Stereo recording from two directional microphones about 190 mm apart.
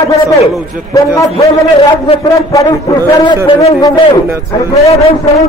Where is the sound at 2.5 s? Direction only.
15° left (ahead or behind).